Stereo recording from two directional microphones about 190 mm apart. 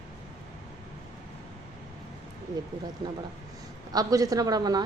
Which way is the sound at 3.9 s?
20° right (ahead or behind).